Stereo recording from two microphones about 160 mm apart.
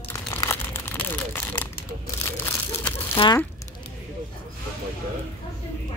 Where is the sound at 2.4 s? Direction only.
15° left (ahead or behind).